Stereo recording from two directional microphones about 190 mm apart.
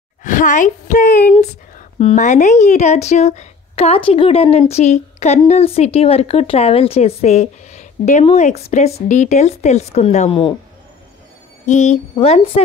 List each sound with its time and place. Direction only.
0.2 s a woman's voice: 40° left (ahead or behind)
11.6 s speech: 40° left (ahead or behind)